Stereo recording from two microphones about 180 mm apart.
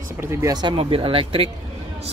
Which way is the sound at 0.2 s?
15° right (ahead or behind).